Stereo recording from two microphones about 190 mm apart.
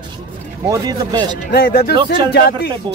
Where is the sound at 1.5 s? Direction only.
55° left (ahead or behind).